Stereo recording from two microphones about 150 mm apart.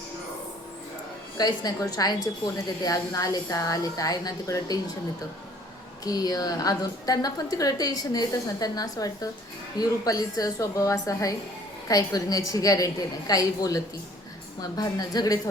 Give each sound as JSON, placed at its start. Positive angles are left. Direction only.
{"t": 1.4, "sound": "a woman's voice", "side_deg": 25}
{"t": 6.1, "sound": "a woman's voice", "side_deg": 25}